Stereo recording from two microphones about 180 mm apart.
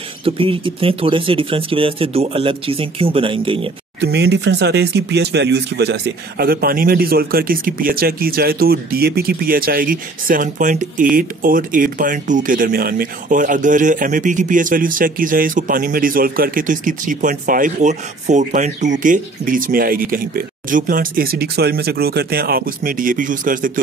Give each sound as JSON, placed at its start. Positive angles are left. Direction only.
{"t": 0.2, "sound": "speech", "side_deg": -30}
{"t": 4.0, "sound": "speech", "side_deg": -70}